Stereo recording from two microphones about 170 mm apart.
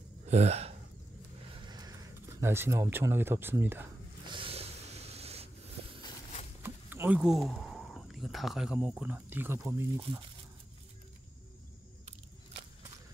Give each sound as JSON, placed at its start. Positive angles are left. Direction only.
{"t": 0.3, "sound": "speech", "side_deg": -40}
{"t": 1.7, "sound": "speech", "side_deg": -20}
{"t": 4.3, "sound": "a sound", "side_deg": -30}
{"t": 6.6, "sound": "speech", "side_deg": -10}